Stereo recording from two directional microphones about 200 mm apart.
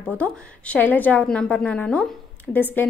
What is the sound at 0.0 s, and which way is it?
A woman's voice, 5° left (ahead or behind).